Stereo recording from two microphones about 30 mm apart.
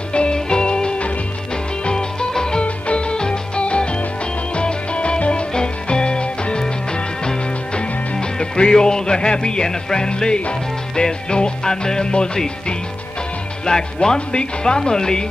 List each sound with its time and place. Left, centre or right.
0.1 s music: left
7.7 s music: left
13.7 s speech: left
14.0 s music: left